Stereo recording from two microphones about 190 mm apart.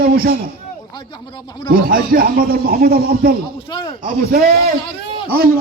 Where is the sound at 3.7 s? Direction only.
25° left (ahead or behind).